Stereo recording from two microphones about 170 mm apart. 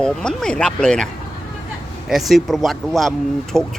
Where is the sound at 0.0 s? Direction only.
5° left (ahead or behind).